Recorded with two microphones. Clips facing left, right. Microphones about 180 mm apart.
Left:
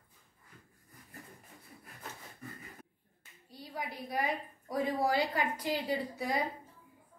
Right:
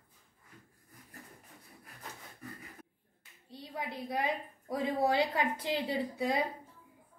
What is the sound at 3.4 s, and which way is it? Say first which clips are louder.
A woman's voice: right 1 dB; 25° right (ahead or behind).